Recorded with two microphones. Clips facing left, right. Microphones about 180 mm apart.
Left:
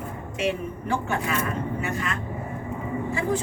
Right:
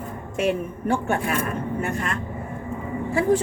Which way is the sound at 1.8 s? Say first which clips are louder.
Right 2 dB; 55° right (ahead or behind).